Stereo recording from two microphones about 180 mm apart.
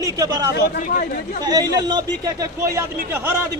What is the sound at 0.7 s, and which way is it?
Speech, 50° left (ahead or behind).